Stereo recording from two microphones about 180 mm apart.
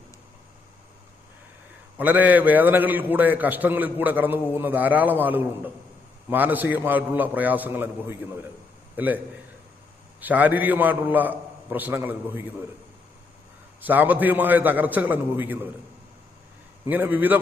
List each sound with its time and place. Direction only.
2.0 s a man's voice: 10° right (ahead or behind)
13.8 s a man's voice: 10° right (ahead or behind)
16.8 s a man's voice: 10° right (ahead or behind)